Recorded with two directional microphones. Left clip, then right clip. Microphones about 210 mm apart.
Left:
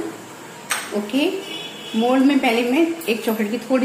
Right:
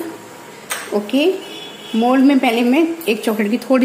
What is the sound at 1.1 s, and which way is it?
A woman's voice, 45° right (ahead or behind).